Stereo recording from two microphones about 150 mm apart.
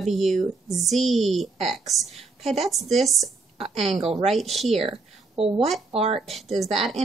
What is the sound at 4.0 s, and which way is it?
Speech, 40° right (ahead or behind).